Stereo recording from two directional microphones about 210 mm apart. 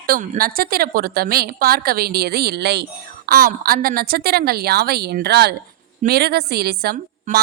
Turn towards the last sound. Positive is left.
turn(degrees=-45)  # may be behind; listen again after turning